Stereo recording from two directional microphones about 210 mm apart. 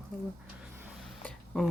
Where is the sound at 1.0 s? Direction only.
Centre (ahead or behind).